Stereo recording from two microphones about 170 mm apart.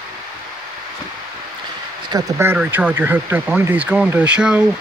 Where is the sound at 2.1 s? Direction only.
20° right (ahead or behind).